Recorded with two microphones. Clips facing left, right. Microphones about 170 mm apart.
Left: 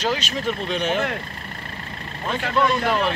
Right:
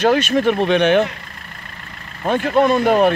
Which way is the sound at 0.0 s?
55° right (ahead or behind).